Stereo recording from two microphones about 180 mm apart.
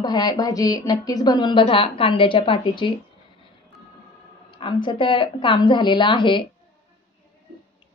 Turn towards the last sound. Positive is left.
turn(degrees=25)  # may be behind; listen again after turning